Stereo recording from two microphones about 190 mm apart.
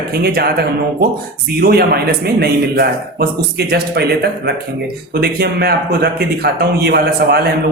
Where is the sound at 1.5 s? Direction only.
55° right (ahead or behind).